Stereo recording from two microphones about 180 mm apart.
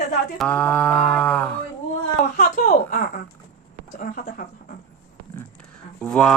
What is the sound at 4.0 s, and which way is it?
Speech, 50° left (ahead or behind).